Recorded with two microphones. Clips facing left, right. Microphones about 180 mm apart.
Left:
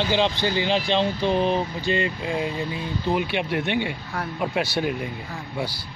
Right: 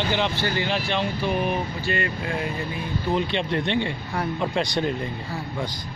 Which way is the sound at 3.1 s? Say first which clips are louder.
Right 1 dB; 5° left (ahead or behind).